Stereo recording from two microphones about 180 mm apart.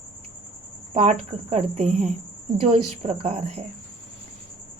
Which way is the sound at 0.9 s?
40° right (ahead or behind).